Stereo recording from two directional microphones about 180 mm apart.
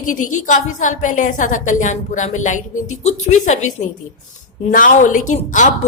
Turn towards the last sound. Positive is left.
turn(degrees=45)  # may be behind; listen again after turning